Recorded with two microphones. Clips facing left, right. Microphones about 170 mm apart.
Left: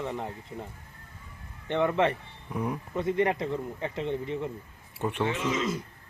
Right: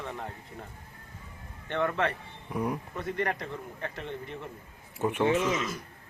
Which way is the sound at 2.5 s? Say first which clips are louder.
Right 1 dB; centre (ahead or behind).